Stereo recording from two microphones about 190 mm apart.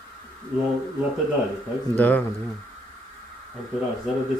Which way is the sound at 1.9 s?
10° left (ahead or behind).